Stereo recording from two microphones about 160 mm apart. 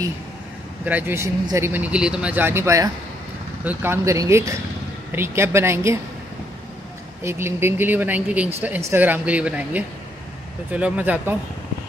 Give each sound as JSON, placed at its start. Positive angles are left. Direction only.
{"t": 0.8, "sound": "speech", "side_deg": -10}
{"t": 7.2, "sound": "speech", "side_deg": -15}